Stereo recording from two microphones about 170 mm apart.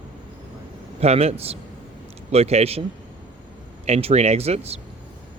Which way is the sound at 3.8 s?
40° right (ahead or behind).